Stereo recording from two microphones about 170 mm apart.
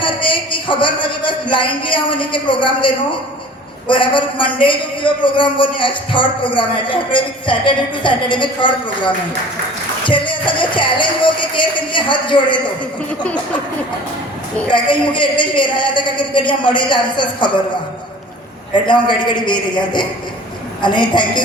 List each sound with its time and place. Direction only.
0.0 s a man's voice: 30° left (ahead or behind)
10.1 s a man's voice: 30° left (ahead or behind)
13.2 s speech: 5° left (ahead or behind)
14.7 s a man's voice: 30° left (ahead or behind)
18.9 s a man's voice: 25° left (ahead or behind)